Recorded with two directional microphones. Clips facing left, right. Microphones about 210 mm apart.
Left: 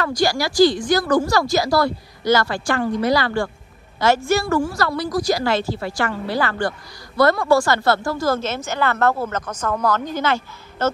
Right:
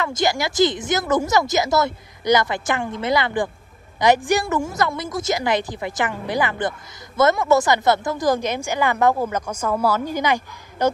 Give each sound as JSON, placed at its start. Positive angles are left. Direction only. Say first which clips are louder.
{"t": 0.0, "sound": "a woman's voice", "louder": "left 1 dB", "side_deg": -20}